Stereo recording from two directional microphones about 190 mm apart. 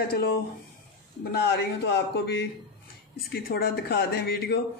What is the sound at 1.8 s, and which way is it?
Speech, 60° left (ahead or behind).